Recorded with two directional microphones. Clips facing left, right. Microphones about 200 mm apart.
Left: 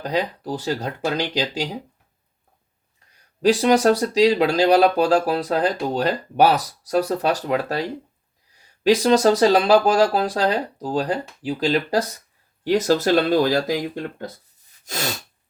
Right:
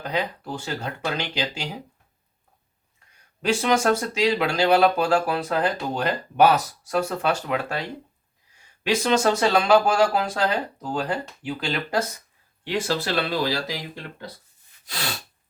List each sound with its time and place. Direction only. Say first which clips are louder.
0.0 s speech: left 4 dB; 35° left (ahead or behind)
3.4 s speech: left 5 dB; 35° left (ahead or behind)
14.8 s sneeze: left 5 dB; 45° left (ahead or behind)